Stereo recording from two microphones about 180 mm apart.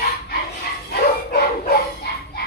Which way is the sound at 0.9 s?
60° left (ahead or behind).